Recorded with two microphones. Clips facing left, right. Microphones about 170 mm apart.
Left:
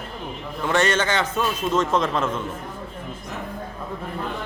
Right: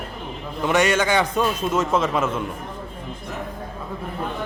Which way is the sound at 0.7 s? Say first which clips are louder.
Right 2 dB; 10° right (ahead or behind).